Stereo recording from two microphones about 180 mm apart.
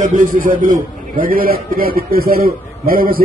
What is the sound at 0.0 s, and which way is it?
A man's voice, 45° right (ahead or behind).